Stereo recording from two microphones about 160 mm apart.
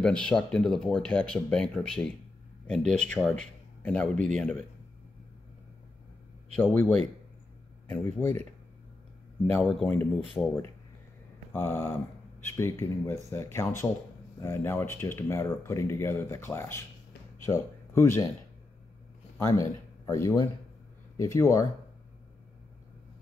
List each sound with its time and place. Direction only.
0.0 s speech: 5° left (ahead or behind)
6.5 s speech: 15° left (ahead or behind)
9.5 s speech: 5° left (ahead or behind)
11.5 s speech: 15° left (ahead or behind)
19.3 s speech: 20° left (ahead or behind)